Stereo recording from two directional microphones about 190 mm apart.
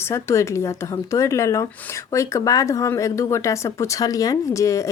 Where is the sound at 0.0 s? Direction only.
15° left (ahead or behind).